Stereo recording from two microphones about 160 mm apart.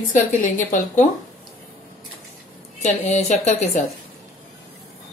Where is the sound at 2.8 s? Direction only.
45° left (ahead or behind).